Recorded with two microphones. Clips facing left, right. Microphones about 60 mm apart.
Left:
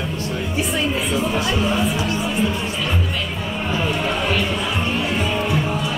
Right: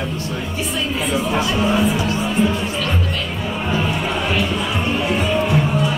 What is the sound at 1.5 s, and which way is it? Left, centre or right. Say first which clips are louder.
Speech: right 2 dB; centre.